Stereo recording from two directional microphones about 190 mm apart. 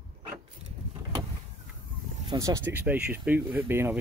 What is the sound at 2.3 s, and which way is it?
Speech, 15° right (ahead or behind).